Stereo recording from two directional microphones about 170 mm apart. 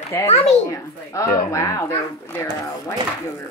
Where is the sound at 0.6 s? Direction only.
20° left (ahead or behind).